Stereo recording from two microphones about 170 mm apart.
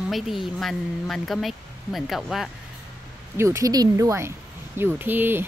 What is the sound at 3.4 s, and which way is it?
Speech, 15° right (ahead or behind).